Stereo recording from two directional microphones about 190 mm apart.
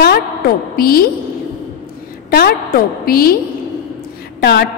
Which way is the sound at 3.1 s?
50° left (ahead or behind).